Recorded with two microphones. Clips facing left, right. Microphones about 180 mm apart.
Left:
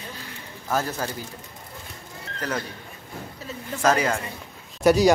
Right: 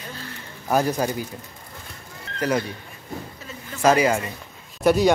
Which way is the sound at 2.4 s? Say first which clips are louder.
Right 6 dB; 10° right (ahead or behind).